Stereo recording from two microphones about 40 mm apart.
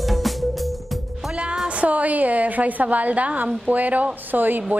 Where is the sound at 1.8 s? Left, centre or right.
Right.